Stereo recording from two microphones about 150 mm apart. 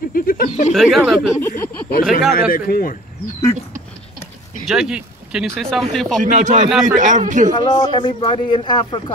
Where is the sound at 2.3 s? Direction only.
85° left.